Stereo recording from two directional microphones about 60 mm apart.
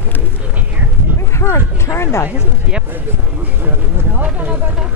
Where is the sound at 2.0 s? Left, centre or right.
Left.